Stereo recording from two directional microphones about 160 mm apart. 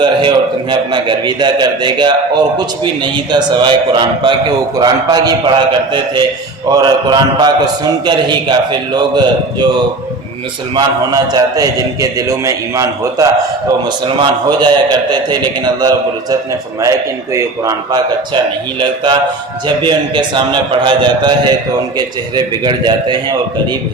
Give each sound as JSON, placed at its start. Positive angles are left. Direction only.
{"t": 0.0, "sound": "a man's voice", "side_deg": -30}
{"t": 10.8, "sound": "a man's voice", "side_deg": -25}
{"t": 17.3, "sound": "a man's voice", "side_deg": -20}
{"t": 19.6, "sound": "a man's voice", "side_deg": -30}